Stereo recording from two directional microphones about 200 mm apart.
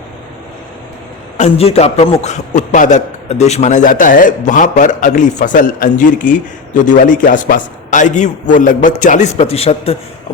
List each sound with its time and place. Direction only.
1.4 s speech: 30° left (ahead or behind)